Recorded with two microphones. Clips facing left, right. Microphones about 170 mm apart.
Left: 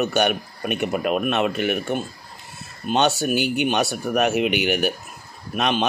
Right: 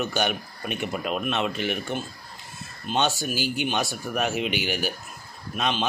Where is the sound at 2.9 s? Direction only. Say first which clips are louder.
Left 6 dB; 70° left (ahead or behind).